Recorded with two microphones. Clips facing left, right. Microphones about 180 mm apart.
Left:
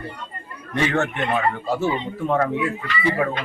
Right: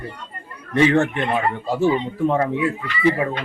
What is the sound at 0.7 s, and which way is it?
Speech, 35° right (ahead or behind).